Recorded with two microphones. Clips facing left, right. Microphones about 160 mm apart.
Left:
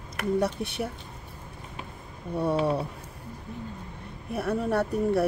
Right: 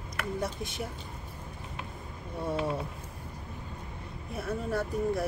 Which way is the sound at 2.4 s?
65° left (ahead or behind).